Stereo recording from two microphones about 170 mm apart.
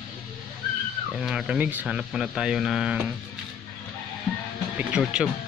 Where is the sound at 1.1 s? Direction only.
5° right (ahead or behind).